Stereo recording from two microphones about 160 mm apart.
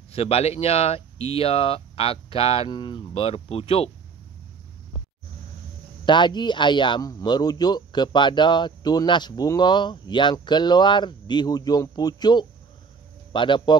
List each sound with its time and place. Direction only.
0.1 s speech: 40° left (ahead or behind)
6.0 s speech: 30° left (ahead or behind)